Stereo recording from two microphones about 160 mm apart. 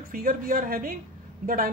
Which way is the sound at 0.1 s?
60° right (ahead or behind).